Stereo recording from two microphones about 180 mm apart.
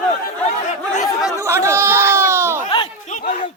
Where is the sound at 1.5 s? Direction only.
15° right (ahead or behind).